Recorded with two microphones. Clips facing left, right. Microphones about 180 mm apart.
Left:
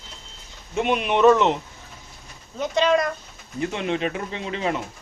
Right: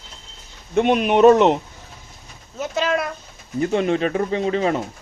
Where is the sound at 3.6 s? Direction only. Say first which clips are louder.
Right 6 dB; 40° right (ahead or behind).